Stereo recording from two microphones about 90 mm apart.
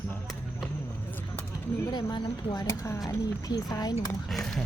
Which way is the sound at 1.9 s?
55° left (ahead or behind).